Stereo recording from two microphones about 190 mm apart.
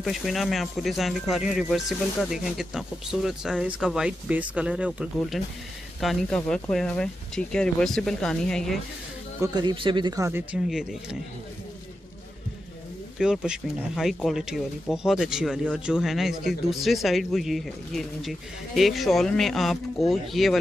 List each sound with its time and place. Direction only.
0.0 s speech: centre (ahead or behind)
9.4 s speech: 20° right (ahead or behind); by 11.1 s 5° right (ahead or behind)
13.2 s speech: 5° right (ahead or behind)